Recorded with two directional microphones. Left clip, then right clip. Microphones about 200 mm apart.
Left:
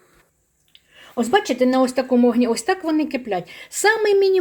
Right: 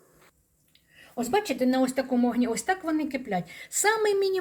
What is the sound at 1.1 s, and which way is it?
Speech, 50° left (ahead or behind).